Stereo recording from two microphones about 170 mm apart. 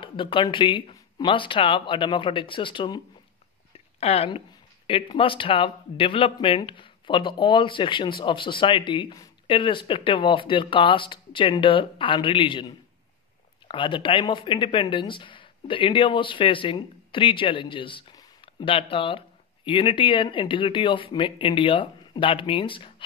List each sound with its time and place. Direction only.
0.0 s speech: 30° left (ahead or behind)
4.0 s speech: 35° left (ahead or behind)